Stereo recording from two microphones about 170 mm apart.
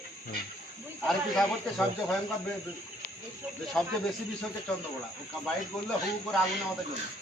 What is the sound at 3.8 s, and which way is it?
Speech, 5° left (ahead or behind).